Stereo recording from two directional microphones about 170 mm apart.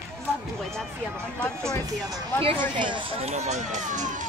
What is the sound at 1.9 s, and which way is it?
Speech, 20° right (ahead or behind).